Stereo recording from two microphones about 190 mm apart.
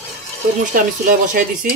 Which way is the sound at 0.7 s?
45° right (ahead or behind).